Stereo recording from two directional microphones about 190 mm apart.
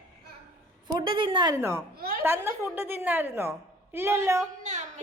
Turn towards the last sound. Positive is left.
turn(degrees=-40)  # may be behind; listen again after turning